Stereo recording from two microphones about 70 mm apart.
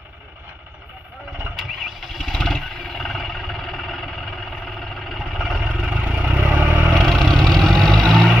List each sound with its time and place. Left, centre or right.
1.8 s vehicle: centre
5.7 s vehicle: centre
6.9 s vehicle: centre